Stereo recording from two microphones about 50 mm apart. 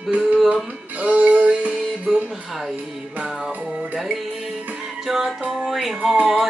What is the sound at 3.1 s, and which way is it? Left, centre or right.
Music, centre.